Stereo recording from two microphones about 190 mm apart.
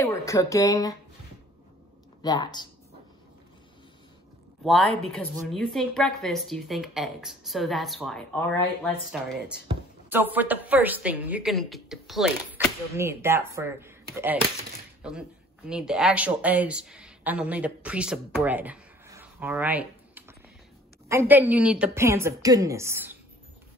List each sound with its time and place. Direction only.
0.0 s speech: 15° left (ahead or behind)
2.2 s speech: 20° left (ahead or behind)
4.6 s speech: centre (ahead or behind)
10.0 s a woman's voice: 10° right (ahead or behind)
12.9 s a woman's voice: 15° right (ahead or behind)